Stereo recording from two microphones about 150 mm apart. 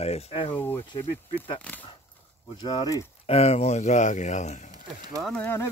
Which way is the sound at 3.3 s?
45° left (ahead or behind).